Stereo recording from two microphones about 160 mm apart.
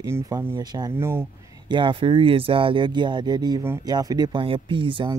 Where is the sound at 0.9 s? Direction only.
15° right (ahead or behind).